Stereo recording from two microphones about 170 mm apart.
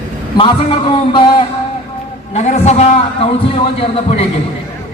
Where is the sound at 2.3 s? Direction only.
40° left (ahead or behind).